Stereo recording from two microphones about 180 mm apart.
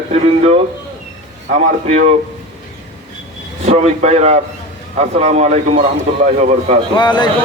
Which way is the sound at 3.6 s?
40° right (ahead or behind).